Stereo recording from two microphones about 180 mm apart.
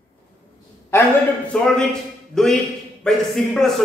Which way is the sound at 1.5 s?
5° left (ahead or behind).